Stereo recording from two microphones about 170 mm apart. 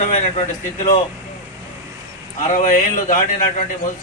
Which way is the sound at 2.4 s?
45° left (ahead or behind).